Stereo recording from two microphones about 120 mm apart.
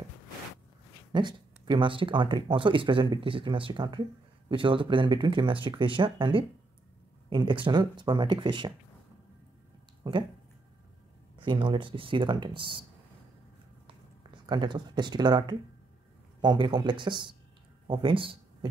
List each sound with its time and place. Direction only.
1.1 s speech: 40° right (ahead or behind)
10.0 s speech: 40° right (ahead or behind)
11.3 s speech: 40° right (ahead or behind)
13.8 s a sound: 40° right (ahead or behind)
16.3 s speech: 40° right (ahead or behind)